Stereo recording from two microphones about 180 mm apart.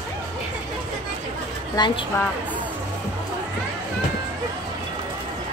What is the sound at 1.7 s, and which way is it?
Speech, 25° left (ahead or behind).